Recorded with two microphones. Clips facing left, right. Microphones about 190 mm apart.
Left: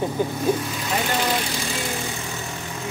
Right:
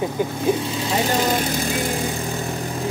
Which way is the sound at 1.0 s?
40° right (ahead or behind).